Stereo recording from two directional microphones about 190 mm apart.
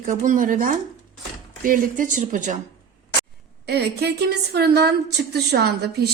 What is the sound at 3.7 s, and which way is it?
A woman's voice, 60° right (ahead or behind).